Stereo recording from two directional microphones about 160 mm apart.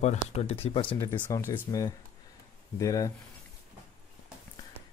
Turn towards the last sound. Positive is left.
turn(degrees=20)  # may be behind; listen again after turning